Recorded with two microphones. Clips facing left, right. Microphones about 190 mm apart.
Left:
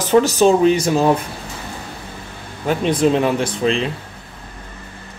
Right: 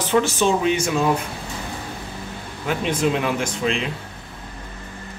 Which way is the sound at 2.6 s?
35° left (ahead or behind).